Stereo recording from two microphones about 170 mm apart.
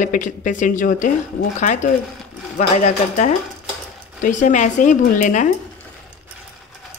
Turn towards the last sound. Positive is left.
turn(degrees=50)  # may be behind; listen again after turning